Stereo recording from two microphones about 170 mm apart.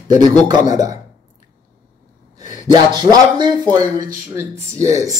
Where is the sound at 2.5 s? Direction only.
25° right (ahead or behind).